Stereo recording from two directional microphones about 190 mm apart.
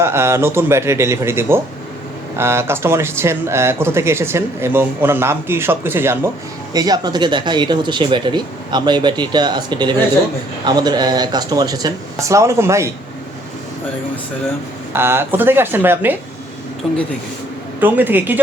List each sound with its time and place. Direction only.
0.0 s speech: 15° right (ahead or behind)
14.9 s speech: 15° right (ahead or behind)
16.8 s speech: 5° left (ahead or behind)
17.7 s speech: 10° right (ahead or behind)